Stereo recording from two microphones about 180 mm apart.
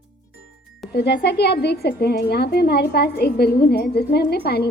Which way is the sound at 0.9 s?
65° left (ahead or behind).